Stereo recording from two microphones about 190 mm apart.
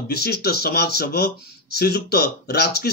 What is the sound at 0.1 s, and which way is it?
Speech, 55° left (ahead or behind).